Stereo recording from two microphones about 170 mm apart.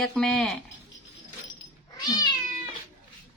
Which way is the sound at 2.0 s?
25° left (ahead or behind).